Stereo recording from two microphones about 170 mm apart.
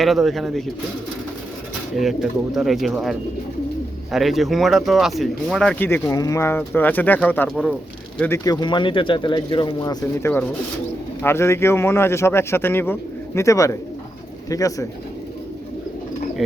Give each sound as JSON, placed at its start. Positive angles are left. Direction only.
{"t": 0.0, "sound": "speech", "side_deg": 0}
{"t": 2.0, "sound": "a man's voice", "side_deg": 0}
{"t": 8.2, "sound": "a man's voice", "side_deg": 15}